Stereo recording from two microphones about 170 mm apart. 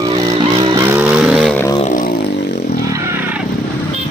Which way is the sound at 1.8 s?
55° left (ahead or behind).